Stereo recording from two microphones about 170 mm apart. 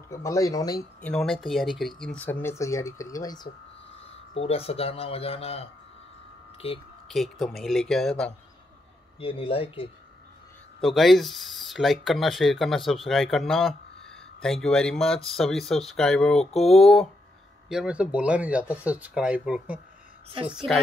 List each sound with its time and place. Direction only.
0.1 s speech: 20° left (ahead or behind)
1.0 s speech: 5° left (ahead or behind); by 3.4 s 20° left (ahead or behind)
4.0 s speech: 35° left (ahead or behind)
7.1 s speech: centre (ahead or behind)
9.2 s speech: 35° left (ahead or behind)
10.8 s speech: centre (ahead or behind)